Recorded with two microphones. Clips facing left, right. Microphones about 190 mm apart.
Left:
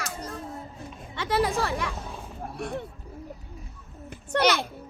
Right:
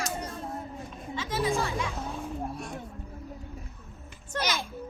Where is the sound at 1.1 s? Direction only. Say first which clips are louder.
Left 3 dB; 65° left (ahead or behind).